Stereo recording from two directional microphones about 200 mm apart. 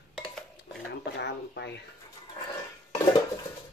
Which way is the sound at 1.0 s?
60° left (ahead or behind).